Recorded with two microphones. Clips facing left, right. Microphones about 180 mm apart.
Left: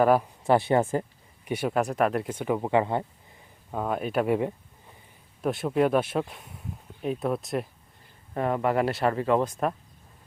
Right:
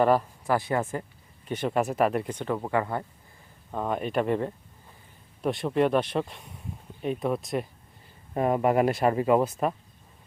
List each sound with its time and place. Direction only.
0.0 s speech: 5° left (ahead or behind)
0.4 s speech: 25° left (ahead or behind)
1.5 s speech: 10° left (ahead or behind)
3.7 s speech: 5° left (ahead or behind)
8.3 s speech: 15° right (ahead or behind)